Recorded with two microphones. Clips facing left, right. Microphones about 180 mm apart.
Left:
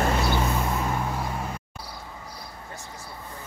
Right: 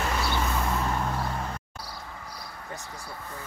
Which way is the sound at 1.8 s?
20° left (ahead or behind).